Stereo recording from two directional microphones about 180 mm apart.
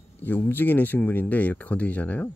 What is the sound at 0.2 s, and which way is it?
Speech, 10° left (ahead or behind).